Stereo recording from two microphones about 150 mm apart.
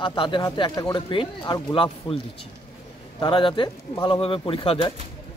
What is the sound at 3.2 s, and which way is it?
A man's voice, 35° left (ahead or behind).